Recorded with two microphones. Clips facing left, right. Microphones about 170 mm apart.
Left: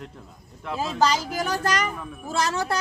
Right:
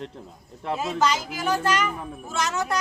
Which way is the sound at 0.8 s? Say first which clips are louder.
Left 2 dB; 35° left (ahead or behind).